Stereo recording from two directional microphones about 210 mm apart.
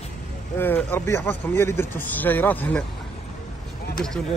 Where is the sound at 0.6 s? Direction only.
10° left (ahead or behind).